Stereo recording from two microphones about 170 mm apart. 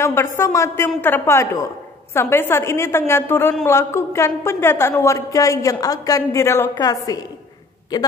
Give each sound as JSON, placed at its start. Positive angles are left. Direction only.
{"t": 0.0, "sound": "a woman's voice", "side_deg": 15}